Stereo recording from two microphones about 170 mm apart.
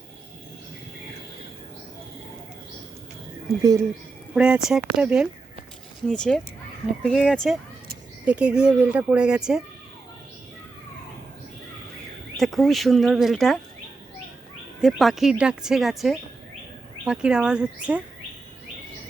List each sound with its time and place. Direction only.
3.6 s speech: 20° right (ahead or behind)
4.4 s speech: 5° right (ahead or behind)
12.4 s speech: centre (ahead or behind)
14.8 s speech: centre (ahead or behind)